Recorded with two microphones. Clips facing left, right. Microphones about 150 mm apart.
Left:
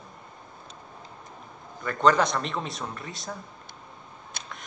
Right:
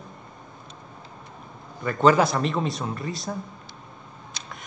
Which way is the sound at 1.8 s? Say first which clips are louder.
Right 3 dB; 5° right (ahead or behind).